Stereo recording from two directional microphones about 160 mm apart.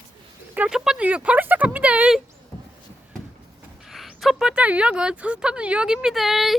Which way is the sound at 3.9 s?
Centre (ahead or behind).